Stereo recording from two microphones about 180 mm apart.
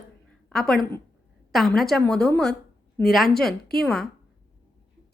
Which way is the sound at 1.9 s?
5° left (ahead or behind).